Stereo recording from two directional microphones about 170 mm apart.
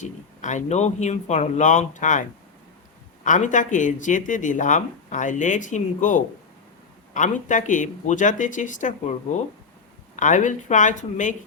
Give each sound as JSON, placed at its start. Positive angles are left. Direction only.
{"t": 0.0, "sound": "speech", "side_deg": 45}
{"t": 3.2, "sound": "speech", "side_deg": 45}
{"t": 10.2, "sound": "speech", "side_deg": 45}